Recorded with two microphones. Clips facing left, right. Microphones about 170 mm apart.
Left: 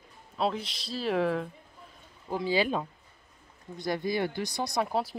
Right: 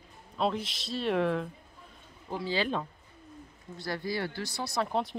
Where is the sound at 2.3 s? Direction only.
15° left (ahead or behind).